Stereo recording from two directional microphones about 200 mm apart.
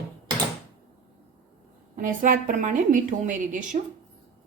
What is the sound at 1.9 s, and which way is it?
A woman's voice, 45° right (ahead or behind).